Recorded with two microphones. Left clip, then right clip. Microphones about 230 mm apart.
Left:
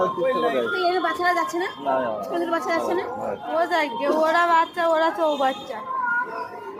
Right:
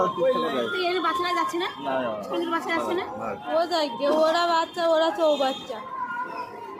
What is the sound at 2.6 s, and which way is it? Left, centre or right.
Speech, centre.